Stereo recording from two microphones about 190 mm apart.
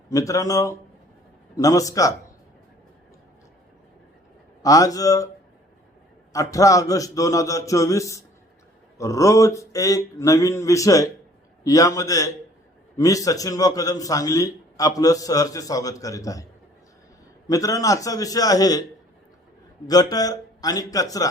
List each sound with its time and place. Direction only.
0.1 s a man's voice: 20° left (ahead or behind)
4.6 s a man's voice: 20° left (ahead or behind)
6.3 s a man's voice: 15° left (ahead or behind)
17.5 s a man's voice: 20° left (ahead or behind)
19.9 s a man's voice: 20° left (ahead or behind)